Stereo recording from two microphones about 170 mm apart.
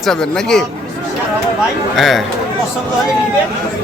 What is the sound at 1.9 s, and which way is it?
Speech, centre (ahead or behind).